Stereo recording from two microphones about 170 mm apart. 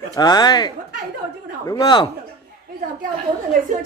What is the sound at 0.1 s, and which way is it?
Speech, 25° left (ahead or behind).